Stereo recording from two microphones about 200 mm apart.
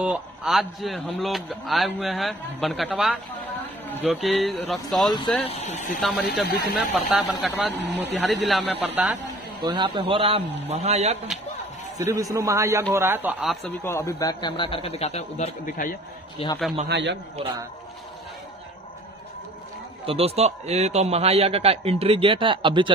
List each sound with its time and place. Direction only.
0.0 s a man's voice: 5° right (ahead or behind)
5.4 s speech: 30° left (ahead or behind)
5.9 s a man's voice: centre (ahead or behind)
7.7 s a man's voice: 60° right (ahead or behind)
8.4 s a man's voice: centre (ahead or behind)
9.6 s a man's voice: 25° right (ahead or behind)
12.1 s a man's voice: 15° right (ahead or behind)
13.7 s speech: 10° left (ahead or behind); by 16.0 s 40° left (ahead or behind)
16.4 s speech: 30° left (ahead or behind)
16.8 s a man's voice: 60° right (ahead or behind)
20.1 s a man's voice: 30° right (ahead or behind)